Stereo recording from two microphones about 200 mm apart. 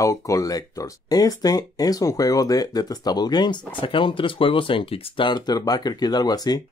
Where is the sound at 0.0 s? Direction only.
15° left (ahead or behind).